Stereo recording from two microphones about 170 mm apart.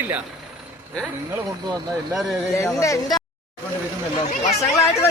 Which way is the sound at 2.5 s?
15° left (ahead or behind).